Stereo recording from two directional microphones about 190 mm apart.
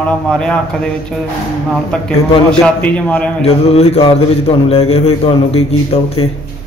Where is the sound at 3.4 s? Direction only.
35° left (ahead or behind).